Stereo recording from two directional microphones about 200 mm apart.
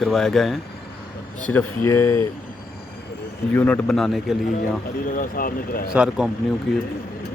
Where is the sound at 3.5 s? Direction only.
10° left (ahead or behind).